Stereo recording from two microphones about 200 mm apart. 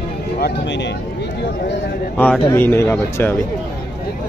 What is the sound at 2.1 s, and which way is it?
Speech, 10° left (ahead or behind).